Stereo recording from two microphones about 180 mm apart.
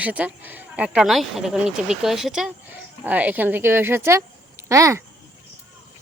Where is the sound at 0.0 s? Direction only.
10° right (ahead or behind).